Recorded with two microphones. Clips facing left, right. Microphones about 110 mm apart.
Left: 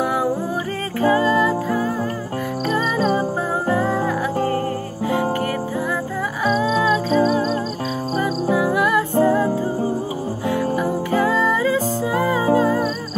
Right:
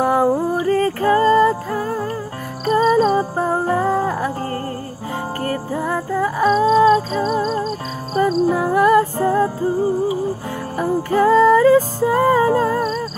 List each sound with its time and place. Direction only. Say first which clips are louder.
0.0 s music: right 5 dB; 40° right (ahead or behind)
6.1 s music: right 6 dB; 40° right (ahead or behind)
10.8 s music: right 3 dB; 45° right (ahead or behind)